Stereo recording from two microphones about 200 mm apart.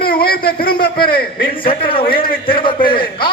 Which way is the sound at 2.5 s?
25° left (ahead or behind).